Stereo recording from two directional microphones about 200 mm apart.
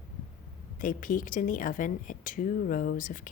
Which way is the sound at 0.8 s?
40° left (ahead or behind).